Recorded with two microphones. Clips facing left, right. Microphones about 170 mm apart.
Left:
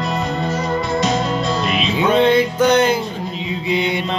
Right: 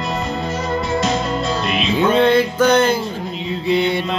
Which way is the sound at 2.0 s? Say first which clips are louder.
Even; 15° left (ahead or behind).